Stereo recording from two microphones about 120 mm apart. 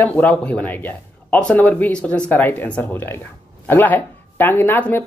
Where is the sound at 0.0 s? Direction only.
10° left (ahead or behind).